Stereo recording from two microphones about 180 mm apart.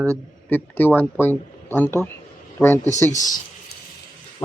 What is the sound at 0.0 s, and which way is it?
Speech, 10° left (ahead or behind).